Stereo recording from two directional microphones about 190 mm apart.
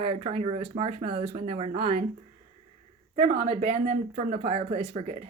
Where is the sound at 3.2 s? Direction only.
45° right (ahead or behind).